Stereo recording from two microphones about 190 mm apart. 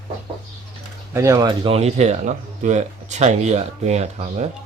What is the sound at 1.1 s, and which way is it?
Speech, 15° right (ahead or behind).